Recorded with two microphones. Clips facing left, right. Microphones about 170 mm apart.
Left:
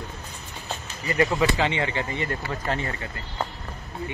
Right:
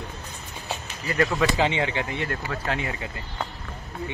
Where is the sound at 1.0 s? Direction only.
10° left (ahead or behind).